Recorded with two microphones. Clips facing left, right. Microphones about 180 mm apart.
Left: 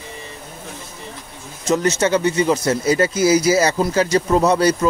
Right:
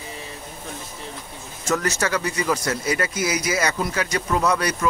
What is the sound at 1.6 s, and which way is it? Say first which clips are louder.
Speech: left 6 dB; 20° left (ahead or behind).